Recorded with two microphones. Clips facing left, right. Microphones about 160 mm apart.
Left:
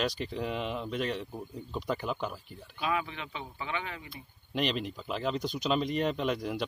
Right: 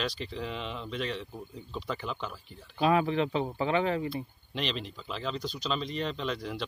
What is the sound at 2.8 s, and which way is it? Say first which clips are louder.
Speech: right 8 dB; 35° right (ahead or behind).